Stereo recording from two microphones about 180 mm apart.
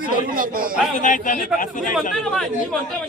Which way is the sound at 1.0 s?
45° left (ahead or behind).